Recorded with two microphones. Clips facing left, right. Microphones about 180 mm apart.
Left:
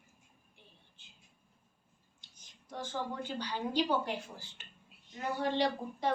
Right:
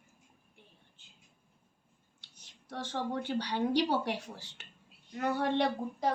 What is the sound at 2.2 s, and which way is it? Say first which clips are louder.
A woman's voice: right 2 dB; 70° right (ahead or behind).